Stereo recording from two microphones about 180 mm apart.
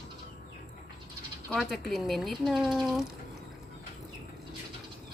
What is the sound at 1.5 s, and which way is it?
Speech, centre (ahead or behind).